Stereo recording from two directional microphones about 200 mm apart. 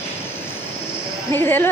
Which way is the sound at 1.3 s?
10° left (ahead or behind).